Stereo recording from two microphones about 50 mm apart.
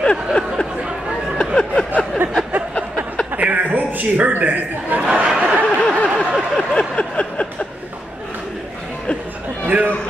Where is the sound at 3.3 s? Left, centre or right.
Right.